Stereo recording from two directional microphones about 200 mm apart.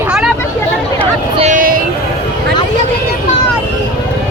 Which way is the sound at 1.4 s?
40° right (ahead or behind).